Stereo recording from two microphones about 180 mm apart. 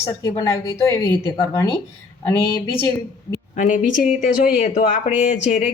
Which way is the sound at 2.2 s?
15° left (ahead or behind).